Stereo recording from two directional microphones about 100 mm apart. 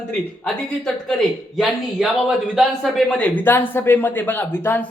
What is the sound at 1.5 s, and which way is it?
Speech, centre (ahead or behind).